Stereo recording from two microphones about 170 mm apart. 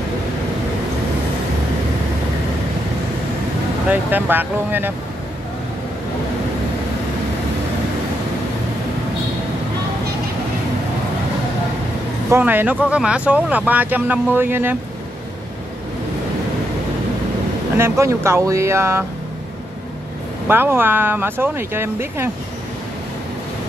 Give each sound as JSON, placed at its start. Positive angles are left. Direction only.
{"t": 3.9, "sound": "speech", "side_deg": -10}
{"t": 12.3, "sound": "speech", "side_deg": -10}
{"t": 17.7, "sound": "speech", "side_deg": -15}
{"t": 20.4, "sound": "speech", "side_deg": -10}